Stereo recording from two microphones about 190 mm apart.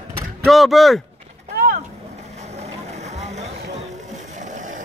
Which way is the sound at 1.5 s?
50° right (ahead or behind).